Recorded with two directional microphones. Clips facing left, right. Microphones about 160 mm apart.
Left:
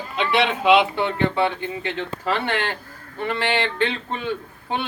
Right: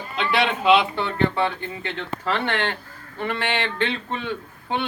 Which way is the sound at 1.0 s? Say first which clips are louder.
Left 1 dB; 20° left (ahead or behind).